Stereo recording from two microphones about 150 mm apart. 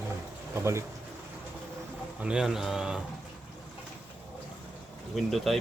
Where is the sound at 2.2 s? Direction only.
5° right (ahead or behind).